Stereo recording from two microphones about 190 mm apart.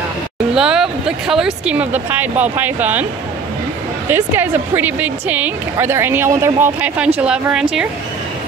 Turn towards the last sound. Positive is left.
turn(degrees=-5)  # may be behind; listen again after turning